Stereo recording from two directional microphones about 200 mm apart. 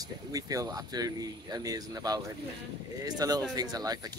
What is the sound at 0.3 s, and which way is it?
Speech, 15° right (ahead or behind).